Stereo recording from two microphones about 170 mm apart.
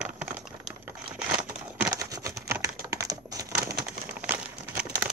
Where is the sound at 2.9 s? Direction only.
20° right (ahead or behind).